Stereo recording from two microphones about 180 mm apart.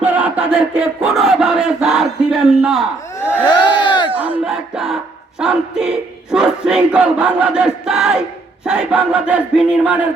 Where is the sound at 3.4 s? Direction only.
25° left (ahead or behind).